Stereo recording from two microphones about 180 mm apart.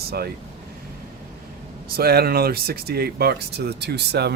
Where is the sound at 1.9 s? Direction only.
60° right (ahead or behind).